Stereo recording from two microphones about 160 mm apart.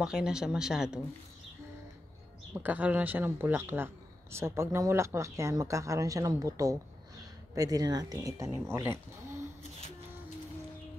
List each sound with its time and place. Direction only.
0.0 s speech: 5° right (ahead or behind)
2.5 s speech: 10° right (ahead or behind)